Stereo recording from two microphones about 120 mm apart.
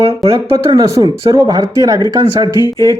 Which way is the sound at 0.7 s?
30° right (ahead or behind).